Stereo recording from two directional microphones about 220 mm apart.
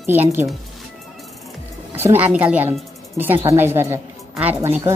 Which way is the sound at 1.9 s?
10° right (ahead or behind).